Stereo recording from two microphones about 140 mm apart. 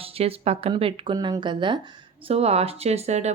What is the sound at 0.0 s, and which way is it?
A woman's voice, 45° right (ahead or behind).